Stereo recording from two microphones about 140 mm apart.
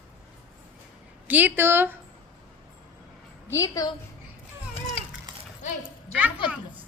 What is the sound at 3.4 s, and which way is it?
Speech, 20° left (ahead or behind).